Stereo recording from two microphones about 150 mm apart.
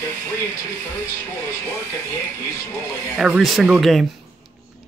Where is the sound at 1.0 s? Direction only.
20° left (ahead or behind).